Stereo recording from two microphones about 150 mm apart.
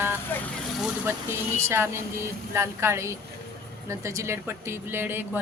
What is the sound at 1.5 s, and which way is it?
Speech, 15° right (ahead or behind).